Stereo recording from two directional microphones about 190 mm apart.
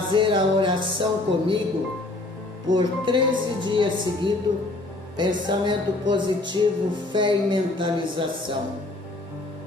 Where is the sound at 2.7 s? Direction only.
20° right (ahead or behind).